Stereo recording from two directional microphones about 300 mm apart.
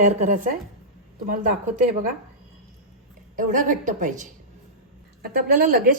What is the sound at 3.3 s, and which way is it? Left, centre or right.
A woman's voice, right.